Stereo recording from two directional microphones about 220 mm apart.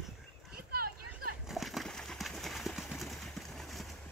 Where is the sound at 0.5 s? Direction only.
45° right (ahead or behind).